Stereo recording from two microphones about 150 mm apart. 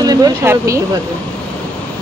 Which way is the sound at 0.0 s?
25° right (ahead or behind).